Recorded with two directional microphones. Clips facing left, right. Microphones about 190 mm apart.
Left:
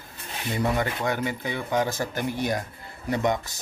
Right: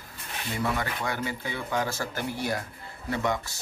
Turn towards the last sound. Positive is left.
turn(degrees=20)  # may be behind; listen again after turning